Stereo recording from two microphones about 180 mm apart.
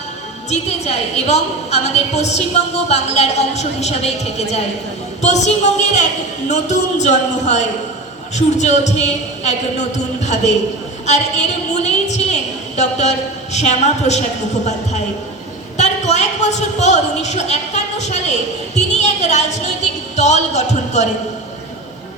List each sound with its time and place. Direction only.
0.5 s a woman's voice: 35° left (ahead or behind)
11.7 s a woman's voice: 40° left (ahead or behind)
15.8 s a woman's voice: 40° left (ahead or behind)